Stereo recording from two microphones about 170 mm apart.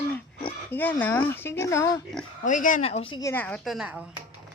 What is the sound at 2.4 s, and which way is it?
Speech, 50° left (ahead or behind).